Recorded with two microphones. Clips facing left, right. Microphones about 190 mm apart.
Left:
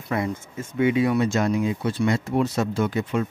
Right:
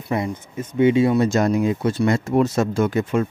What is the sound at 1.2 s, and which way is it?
Speech, 40° right (ahead or behind).